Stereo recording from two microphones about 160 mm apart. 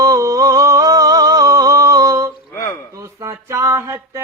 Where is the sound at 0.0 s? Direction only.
20° right (ahead or behind).